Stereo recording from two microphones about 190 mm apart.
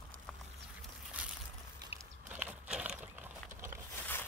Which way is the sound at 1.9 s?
10° right (ahead or behind).